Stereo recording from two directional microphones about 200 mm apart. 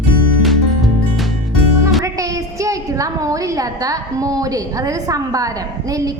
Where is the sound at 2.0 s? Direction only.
15° right (ahead or behind).